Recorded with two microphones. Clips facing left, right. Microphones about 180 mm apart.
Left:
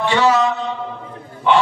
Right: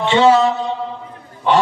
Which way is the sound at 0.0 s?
25° right (ahead or behind).